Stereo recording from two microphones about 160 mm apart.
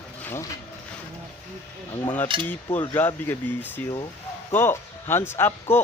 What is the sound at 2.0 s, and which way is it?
Speech, 10° left (ahead or behind).